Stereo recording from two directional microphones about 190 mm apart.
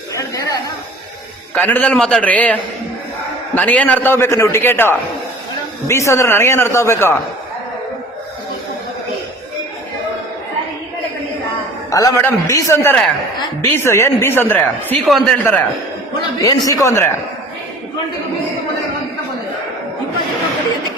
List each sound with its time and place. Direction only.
0.2 s speech: 20° left (ahead or behind)
1.5 s speech: 10° left (ahead or behind)
11.9 s speech: 20° left (ahead or behind)
16.4 s speech: 20° left (ahead or behind)